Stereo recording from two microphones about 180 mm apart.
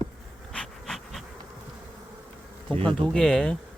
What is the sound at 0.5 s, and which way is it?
Bee, centre (ahead or behind).